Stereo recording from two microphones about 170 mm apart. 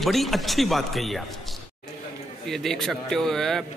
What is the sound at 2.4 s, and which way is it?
Speech, centre (ahead or behind).